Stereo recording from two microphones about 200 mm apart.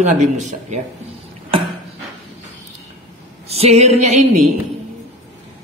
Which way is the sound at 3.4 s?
30° right (ahead or behind).